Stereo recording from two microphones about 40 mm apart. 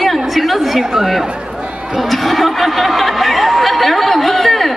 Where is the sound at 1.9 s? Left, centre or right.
Centre.